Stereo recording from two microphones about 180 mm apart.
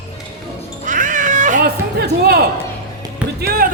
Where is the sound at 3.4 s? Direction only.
55° right (ahead or behind).